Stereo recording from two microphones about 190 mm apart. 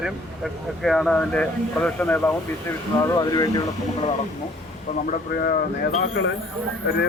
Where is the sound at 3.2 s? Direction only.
20° left (ahead or behind).